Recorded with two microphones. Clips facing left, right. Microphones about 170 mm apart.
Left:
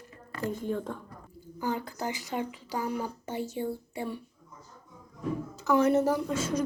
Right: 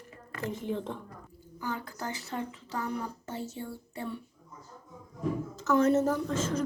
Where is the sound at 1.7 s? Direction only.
15° left (ahead or behind).